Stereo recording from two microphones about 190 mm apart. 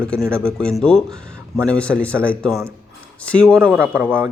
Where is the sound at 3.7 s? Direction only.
10° right (ahead or behind).